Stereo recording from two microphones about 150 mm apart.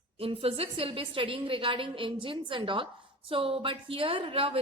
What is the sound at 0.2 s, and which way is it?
A woman's voice, 40° right (ahead or behind).